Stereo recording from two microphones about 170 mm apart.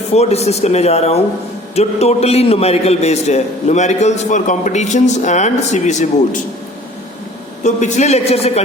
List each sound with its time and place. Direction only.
0.1 s a man's voice: 40° left (ahead or behind)
7.6 s speech: 45° left (ahead or behind)